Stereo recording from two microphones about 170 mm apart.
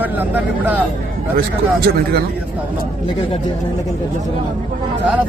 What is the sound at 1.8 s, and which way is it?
Speech, 70° right (ahead or behind).